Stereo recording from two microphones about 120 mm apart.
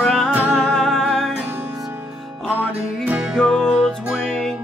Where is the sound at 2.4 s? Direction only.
10° right (ahead or behind).